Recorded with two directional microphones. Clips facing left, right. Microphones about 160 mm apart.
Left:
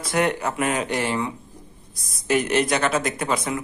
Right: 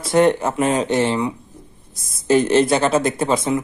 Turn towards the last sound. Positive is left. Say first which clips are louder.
# right 6 dB
turn(degrees=-25)  # may be behind; listen again after turning